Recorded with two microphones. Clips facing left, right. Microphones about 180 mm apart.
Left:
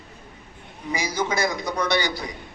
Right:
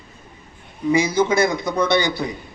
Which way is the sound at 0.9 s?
25° right (ahead or behind).